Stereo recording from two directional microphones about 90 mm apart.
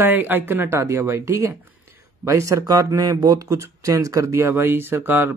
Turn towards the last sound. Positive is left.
turn(degrees=-25)  # may be behind; listen again after turning